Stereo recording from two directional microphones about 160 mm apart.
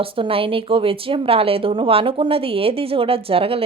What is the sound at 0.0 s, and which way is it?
A woman's voice, 35° right (ahead or behind).